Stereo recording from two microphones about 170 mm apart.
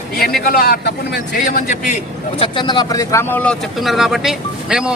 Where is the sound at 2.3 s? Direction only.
30° left (ahead or behind).